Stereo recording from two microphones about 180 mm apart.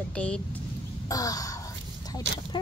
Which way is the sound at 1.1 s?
20° left (ahead or behind).